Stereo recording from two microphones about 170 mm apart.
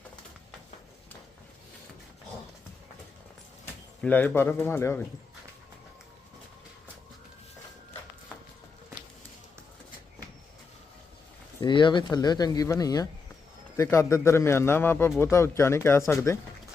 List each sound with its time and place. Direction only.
4.0 s a man's voice: 10° left (ahead or behind)
11.6 s a man's voice: 30° left (ahead or behind)